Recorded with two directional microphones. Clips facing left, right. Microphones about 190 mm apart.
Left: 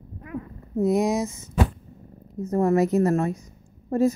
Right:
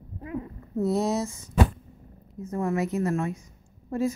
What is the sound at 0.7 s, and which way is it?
Speech, 15° left (ahead or behind).